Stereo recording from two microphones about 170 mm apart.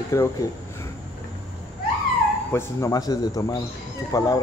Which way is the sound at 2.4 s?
15° left (ahead or behind).